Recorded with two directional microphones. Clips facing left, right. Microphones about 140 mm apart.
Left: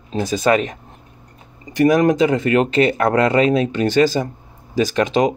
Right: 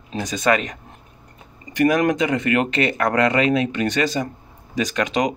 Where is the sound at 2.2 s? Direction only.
35° left (ahead or behind).